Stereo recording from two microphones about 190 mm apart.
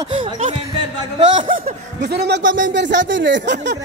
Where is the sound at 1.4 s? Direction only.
45° right (ahead or behind).